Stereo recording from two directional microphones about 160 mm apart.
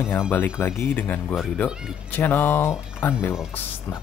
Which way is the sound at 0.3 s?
15° left (ahead or behind).